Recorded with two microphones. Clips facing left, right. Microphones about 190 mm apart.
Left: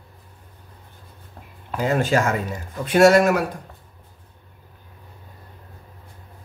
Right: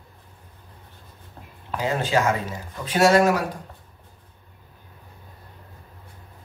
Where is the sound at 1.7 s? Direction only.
50° left (ahead or behind).